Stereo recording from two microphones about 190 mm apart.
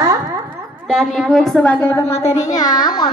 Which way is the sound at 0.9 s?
Centre (ahead or behind).